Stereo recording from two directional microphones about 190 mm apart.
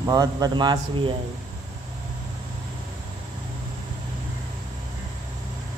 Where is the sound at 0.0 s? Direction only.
20° right (ahead or behind).